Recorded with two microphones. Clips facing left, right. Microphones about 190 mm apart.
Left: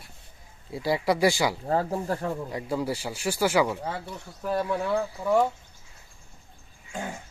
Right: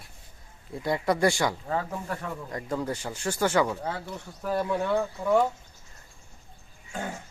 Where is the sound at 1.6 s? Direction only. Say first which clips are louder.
Left 5 dB; 35° left (ahead or behind).